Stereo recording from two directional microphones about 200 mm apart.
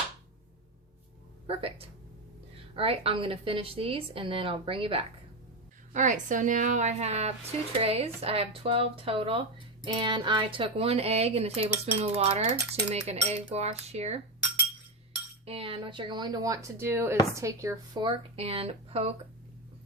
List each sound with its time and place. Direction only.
1.5 s a woman's voice: 30° right (ahead or behind)
5.9 s a woman's voice: 40° right (ahead or behind)
15.4 s a woman's voice: 30° right (ahead or behind)